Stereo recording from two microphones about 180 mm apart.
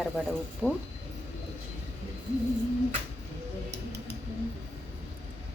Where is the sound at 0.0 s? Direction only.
5° left (ahead or behind).